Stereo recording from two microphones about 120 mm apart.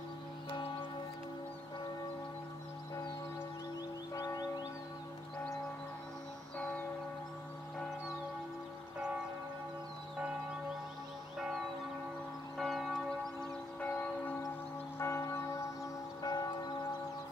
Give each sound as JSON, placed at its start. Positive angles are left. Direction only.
{"t": 4.1, "sound": "music", "side_deg": 30}
{"t": 11.3, "sound": "church bell", "side_deg": -5}
{"t": 13.7, "sound": "church bell", "side_deg": 15}
{"t": 16.2, "sound": "church bell", "side_deg": 35}